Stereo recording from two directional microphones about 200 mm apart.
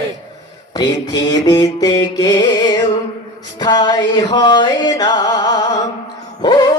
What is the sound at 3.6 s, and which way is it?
Music, 20° left (ahead or behind).